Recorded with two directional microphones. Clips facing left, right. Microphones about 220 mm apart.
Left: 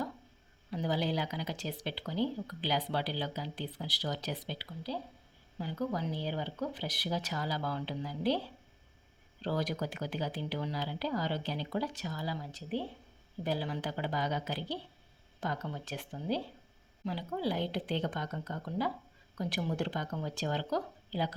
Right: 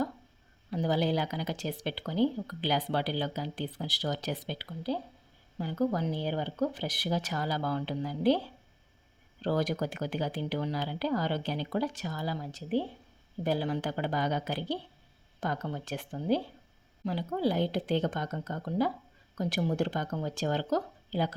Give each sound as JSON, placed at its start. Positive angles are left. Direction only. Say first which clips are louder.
{"t": 0.7, "sound": "speech", "louder": "right 4 dB", "side_deg": -45}
{"t": 9.4, "sound": "speech", "louder": "right 4 dB", "side_deg": -50}